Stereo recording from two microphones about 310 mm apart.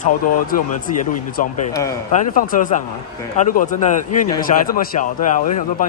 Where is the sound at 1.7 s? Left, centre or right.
Centre.